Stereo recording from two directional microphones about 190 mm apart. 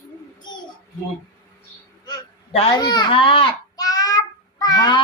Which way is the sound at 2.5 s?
20° left (ahead or behind).